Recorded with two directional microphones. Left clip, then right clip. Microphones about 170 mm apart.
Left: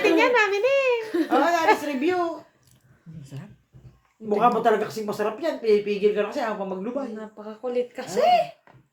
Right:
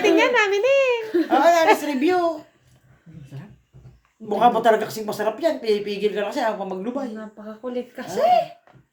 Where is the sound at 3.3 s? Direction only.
70° left (ahead or behind).